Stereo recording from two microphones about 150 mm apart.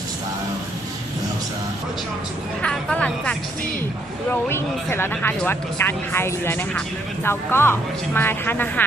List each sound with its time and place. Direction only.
2.6 s speech: 10° left (ahead or behind)